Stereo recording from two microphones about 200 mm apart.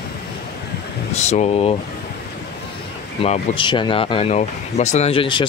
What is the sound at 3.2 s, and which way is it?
Speech, 30° left (ahead or behind).